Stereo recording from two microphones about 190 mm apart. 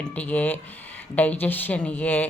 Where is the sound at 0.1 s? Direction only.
10° left (ahead or behind).